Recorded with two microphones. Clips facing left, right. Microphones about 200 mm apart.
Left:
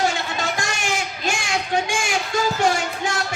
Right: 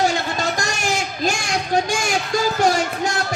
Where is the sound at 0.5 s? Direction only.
40° right (ahead or behind).